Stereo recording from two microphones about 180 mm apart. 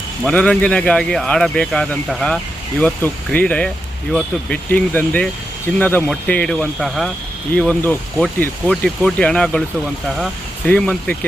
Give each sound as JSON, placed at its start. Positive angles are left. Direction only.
{"t": 0.3, "sound": "speech", "side_deg": 5}
{"t": 10.7, "sound": "speech", "side_deg": 5}